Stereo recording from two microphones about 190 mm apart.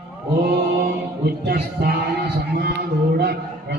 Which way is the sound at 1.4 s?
55° right (ahead or behind).